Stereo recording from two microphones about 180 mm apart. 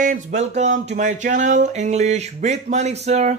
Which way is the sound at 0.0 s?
45° right (ahead or behind).